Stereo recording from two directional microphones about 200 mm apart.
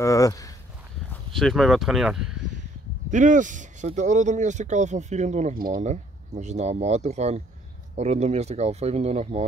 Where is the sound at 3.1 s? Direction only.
40° right (ahead or behind).